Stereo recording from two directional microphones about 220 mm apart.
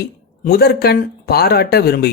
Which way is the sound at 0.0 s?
45° left (ahead or behind).